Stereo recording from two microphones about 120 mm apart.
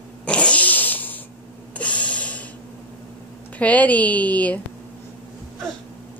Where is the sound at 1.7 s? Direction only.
10° left (ahead or behind).